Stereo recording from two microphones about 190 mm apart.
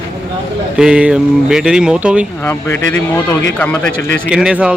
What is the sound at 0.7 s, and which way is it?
Speech, 5° right (ahead or behind).